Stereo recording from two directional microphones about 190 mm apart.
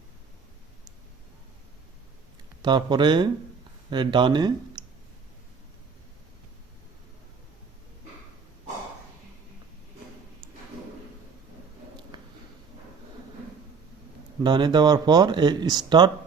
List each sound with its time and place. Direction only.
2.6 s speech: 25° right (ahead or behind)
12.1 s a sound: 25° right (ahead or behind)
14.4 s speech: 25° right (ahead or behind)